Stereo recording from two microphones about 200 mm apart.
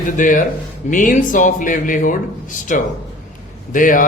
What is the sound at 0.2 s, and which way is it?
A man's voice, 40° left (ahead or behind).